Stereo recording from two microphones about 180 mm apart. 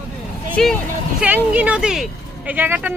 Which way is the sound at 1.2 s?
5° right (ahead or behind).